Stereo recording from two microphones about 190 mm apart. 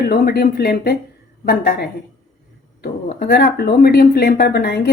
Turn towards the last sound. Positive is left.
turn(degrees=55)  # may be behind; listen again after turning